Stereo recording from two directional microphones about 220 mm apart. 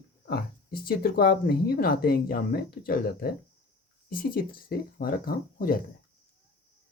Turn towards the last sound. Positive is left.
turn(degrees=40)  # may be behind; listen again after turning